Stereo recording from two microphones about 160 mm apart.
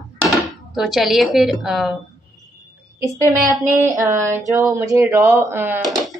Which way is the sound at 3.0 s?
20° right (ahead or behind).